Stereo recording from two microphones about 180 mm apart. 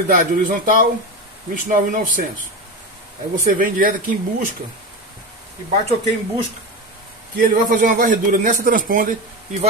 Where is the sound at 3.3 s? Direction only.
50° right (ahead or behind).